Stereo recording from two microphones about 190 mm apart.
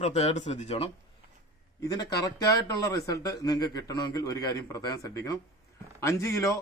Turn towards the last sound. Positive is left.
turn(degrees=15)  # may be behind; listen again after turning